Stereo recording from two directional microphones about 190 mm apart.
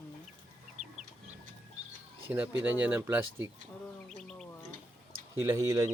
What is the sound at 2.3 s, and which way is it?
Speech, 10° right (ahead or behind).